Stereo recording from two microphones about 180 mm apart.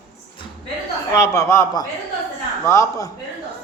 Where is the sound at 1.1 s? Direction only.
15° left (ahead or behind).